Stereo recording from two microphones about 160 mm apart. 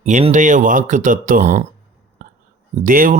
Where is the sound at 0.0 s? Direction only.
45° right (ahead or behind).